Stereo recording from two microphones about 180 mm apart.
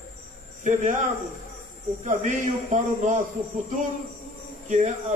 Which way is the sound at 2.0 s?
40° right (ahead or behind).